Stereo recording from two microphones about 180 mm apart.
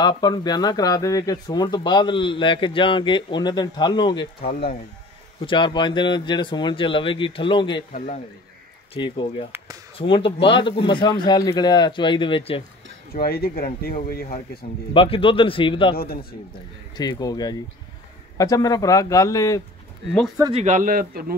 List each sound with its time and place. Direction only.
0.0 s speech: 25° left (ahead or behind)
5.4 s speech: 25° left (ahead or behind)
8.9 s speech: 30° left (ahead or behind)
13.1 s speech: 60° left (ahead or behind)
15.0 s speech: 30° left (ahead or behind)
16.0 s speech: 55° left (ahead or behind)
16.9 s speech: 25° left (ahead or behind)
20.5 s a man's voice: 40° right (ahead or behind)